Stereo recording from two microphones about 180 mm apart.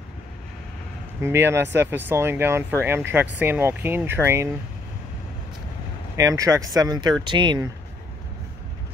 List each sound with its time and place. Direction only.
1.2 s speech: 15° right (ahead or behind)
6.1 s speech: 20° right (ahead or behind)